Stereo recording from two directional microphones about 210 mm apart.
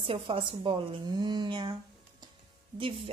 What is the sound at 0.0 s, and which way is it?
A woman's voice, 25° right (ahead or behind).